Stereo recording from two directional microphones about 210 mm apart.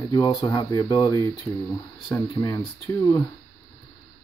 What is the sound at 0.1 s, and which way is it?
Speech, 20° left (ahead or behind).